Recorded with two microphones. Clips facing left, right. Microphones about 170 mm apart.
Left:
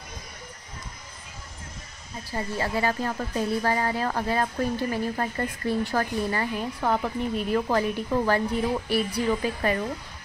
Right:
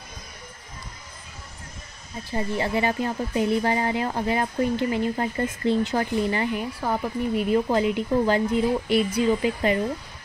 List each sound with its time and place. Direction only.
2.3 s speech: 20° right (ahead or behind)